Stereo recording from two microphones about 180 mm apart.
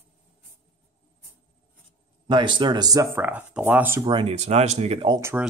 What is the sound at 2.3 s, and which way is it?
Speech, 25° right (ahead or behind).